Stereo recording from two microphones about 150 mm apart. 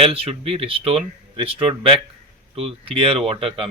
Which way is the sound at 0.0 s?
40° right (ahead or behind).